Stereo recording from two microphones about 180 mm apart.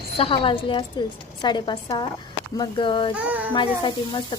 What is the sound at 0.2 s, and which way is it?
A woman's voice, 30° left (ahead or behind).